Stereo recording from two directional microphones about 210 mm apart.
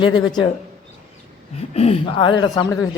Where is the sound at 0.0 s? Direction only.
20° left (ahead or behind).